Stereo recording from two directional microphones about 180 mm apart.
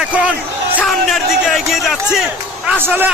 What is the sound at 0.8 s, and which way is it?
A man's voice, centre (ahead or behind).